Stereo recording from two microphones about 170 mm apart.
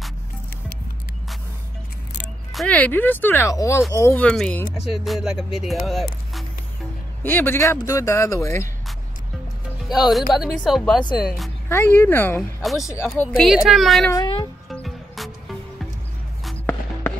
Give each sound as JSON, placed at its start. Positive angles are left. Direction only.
{"t": 2.5, "sound": "speech", "side_deg": 5}
{"t": 7.2, "sound": "speech", "side_deg": 10}
{"t": 9.8, "sound": "speech", "side_deg": 0}
{"t": 11.7, "sound": "speech", "side_deg": 15}
{"t": 13.4, "sound": "speech", "side_deg": 0}
{"t": 14.1, "sound": "music", "side_deg": 25}
{"t": 14.7, "sound": "music", "side_deg": 0}
{"t": 16.4, "sound": "music", "side_deg": 10}